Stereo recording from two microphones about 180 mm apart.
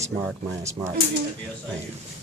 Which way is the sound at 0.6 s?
15° right (ahead or behind).